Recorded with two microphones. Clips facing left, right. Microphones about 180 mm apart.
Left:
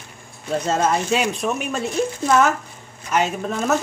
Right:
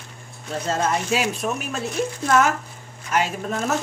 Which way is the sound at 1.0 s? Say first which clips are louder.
Left 2 dB; 5° right (ahead or behind).